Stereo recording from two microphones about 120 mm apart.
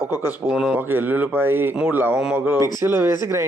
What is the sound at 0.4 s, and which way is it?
Speech, 10° right (ahead or behind).